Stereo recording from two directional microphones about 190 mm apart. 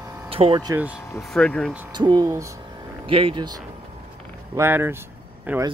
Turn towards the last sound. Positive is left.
turn(degrees=-10)  # may be behind; listen again after turning